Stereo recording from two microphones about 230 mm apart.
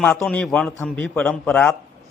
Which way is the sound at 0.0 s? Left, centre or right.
Centre.